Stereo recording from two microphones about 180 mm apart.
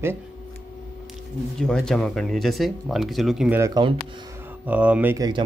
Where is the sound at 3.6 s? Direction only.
25° right (ahead or behind).